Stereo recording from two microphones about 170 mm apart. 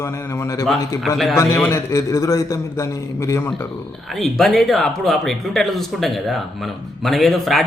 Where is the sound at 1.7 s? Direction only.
20° left (ahead or behind).